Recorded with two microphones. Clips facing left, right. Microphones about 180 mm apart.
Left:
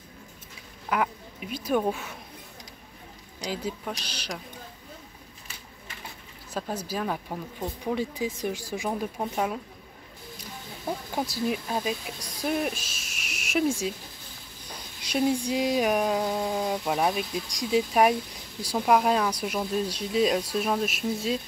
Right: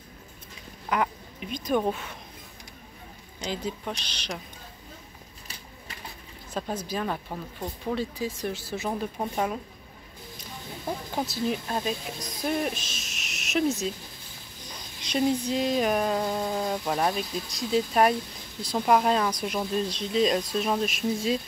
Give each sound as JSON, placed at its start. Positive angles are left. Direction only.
{"t": 0.8, "sound": "speech", "side_deg": 5}
{"t": 3.3, "sound": "speech", "side_deg": 10}
{"t": 6.5, "sound": "speech", "side_deg": 10}
{"t": 10.9, "sound": "speech", "side_deg": 5}
{"t": 15.0, "sound": "speech", "side_deg": 10}